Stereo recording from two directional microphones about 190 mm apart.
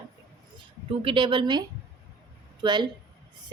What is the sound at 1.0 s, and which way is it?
A woman's voice, 25° right (ahead or behind).